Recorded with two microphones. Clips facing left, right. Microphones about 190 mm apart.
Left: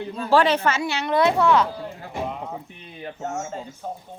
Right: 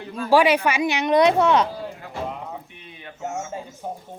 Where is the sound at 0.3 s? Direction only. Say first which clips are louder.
Right 2 dB; 10° right (ahead or behind).